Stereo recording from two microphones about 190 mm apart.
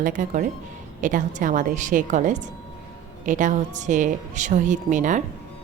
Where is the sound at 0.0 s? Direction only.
45° right (ahead or behind).